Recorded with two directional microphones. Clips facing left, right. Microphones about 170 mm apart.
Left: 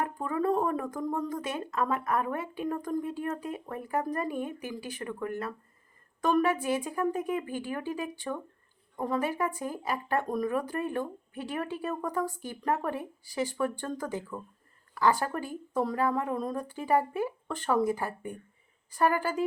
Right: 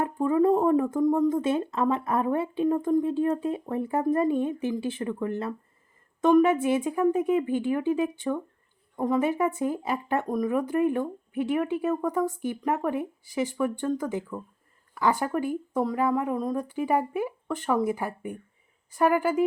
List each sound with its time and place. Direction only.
0.0 s speech: 25° right (ahead or behind)